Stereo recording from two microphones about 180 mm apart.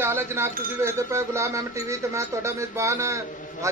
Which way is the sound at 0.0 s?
15° right (ahead or behind).